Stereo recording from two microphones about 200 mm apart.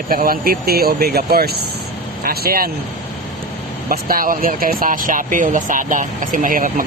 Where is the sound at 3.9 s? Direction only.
45° right (ahead or behind).